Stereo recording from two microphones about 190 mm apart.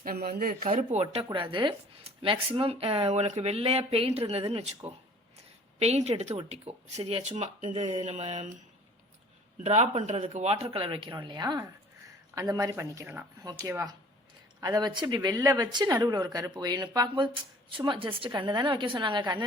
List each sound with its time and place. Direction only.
0.0 s speech: 50° right (ahead or behind)
0.7 s speech: 35° right (ahead or behind)
1.0 s speech: 25° right (ahead or behind)
5.8 s speech: 35° right (ahead or behind)
9.6 s speech: 35° right (ahead or behind)